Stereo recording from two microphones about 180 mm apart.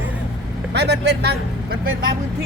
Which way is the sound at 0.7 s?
70° right (ahead or behind).